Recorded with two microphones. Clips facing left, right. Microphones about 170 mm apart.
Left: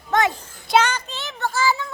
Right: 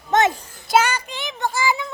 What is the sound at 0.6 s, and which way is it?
Child singing, 5° right (ahead or behind).